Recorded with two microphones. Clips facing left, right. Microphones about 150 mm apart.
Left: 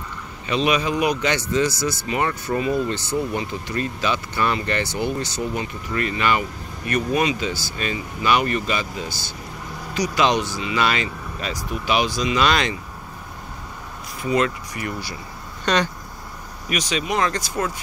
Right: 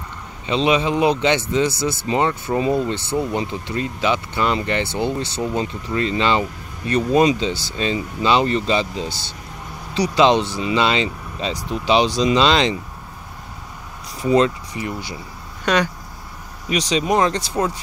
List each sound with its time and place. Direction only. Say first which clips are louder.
0.5 s speech: right 3 dB; 25° right (ahead or behind)
14.2 s speech: right 5 dB; 30° right (ahead or behind)
15.6 s speech: right 2 dB; 10° right (ahead or behind)
16.6 s speech: right 5 dB; 35° right (ahead or behind)